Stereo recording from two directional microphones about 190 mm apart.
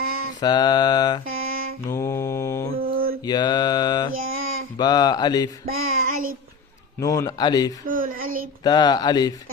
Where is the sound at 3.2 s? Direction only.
20° left (ahead or behind).